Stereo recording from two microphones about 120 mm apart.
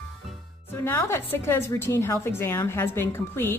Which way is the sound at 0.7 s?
20° left (ahead or behind).